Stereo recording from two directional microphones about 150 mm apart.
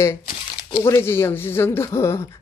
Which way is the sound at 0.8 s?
15° left (ahead or behind).